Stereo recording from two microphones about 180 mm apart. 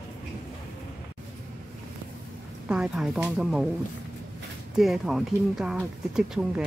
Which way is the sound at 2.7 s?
5° right (ahead or behind).